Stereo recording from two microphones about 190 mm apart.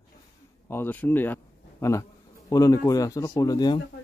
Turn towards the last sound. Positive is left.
turn(degrees=20)  # may be behind; listen again after turning